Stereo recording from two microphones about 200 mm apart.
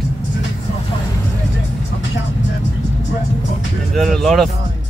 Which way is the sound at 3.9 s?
Centre (ahead or behind).